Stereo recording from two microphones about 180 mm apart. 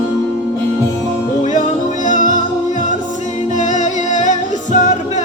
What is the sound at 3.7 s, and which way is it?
Music, 45° left (ahead or behind).